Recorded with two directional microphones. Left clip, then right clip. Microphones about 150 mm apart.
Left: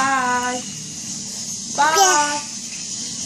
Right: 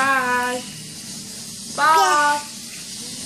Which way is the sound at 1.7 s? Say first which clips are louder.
Right 1 dB; 25° right (ahead or behind).